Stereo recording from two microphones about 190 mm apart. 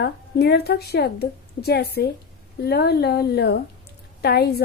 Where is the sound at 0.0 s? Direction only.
60° left (ahead or behind).